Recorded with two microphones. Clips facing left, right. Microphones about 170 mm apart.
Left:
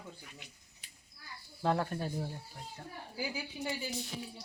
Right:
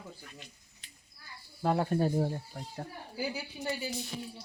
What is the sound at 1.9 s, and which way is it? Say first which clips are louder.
Speech: right 9 dB; 45° right (ahead or behind).